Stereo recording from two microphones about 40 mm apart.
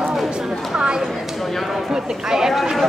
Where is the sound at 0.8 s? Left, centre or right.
Centre.